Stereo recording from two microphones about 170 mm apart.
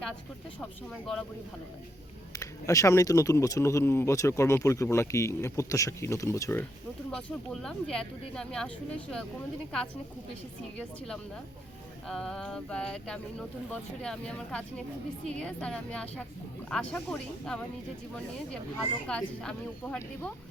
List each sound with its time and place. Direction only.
0.6 s speech: 5° left (ahead or behind)
2.3 s speech: 20° left (ahead or behind)
19.0 s speech: 5° left (ahead or behind)